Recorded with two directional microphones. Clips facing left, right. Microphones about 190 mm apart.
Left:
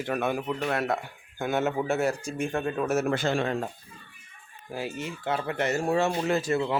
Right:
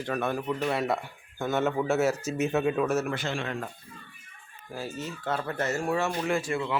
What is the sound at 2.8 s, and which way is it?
Speech, 10° left (ahead or behind).